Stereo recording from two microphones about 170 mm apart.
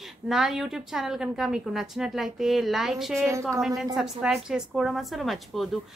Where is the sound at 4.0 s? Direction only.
5° right (ahead or behind).